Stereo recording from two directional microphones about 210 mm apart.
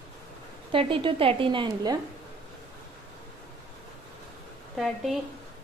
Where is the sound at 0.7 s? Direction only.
25° right (ahead or behind).